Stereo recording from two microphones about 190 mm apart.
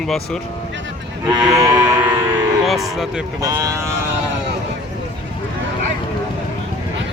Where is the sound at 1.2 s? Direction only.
20° right (ahead or behind).